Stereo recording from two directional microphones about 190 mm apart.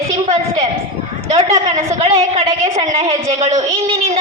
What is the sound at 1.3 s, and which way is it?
A woman's voice, 35° right (ahead or behind).